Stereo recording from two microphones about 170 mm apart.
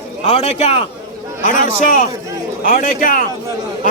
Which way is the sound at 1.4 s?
50° left (ahead or behind).